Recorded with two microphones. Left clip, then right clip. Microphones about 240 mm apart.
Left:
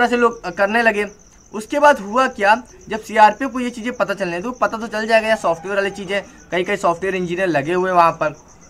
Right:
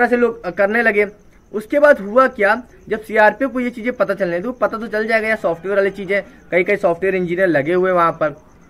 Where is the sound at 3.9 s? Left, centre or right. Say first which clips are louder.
Right 3 dB; left.